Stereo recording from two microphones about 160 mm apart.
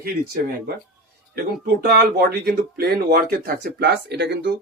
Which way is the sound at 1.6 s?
70° right (ahead or behind).